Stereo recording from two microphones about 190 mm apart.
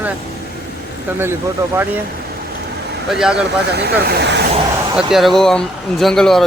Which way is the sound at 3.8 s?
60° right (ahead or behind).